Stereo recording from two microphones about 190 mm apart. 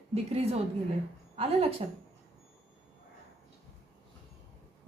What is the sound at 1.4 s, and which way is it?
Speech, 30° right (ahead or behind).